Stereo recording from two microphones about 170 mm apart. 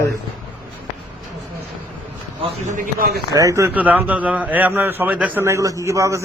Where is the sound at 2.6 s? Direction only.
50° right (ahead or behind).